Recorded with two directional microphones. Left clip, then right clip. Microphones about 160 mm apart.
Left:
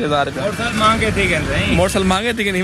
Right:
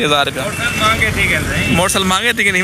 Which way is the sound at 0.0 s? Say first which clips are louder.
Right 4 dB; 5° right (ahead or behind).